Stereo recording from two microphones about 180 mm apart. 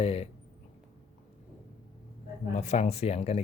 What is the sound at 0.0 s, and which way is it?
Speech, 35° left (ahead or behind).